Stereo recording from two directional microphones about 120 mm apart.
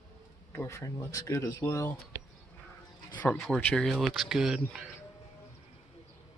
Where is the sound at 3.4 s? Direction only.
10° left (ahead or behind).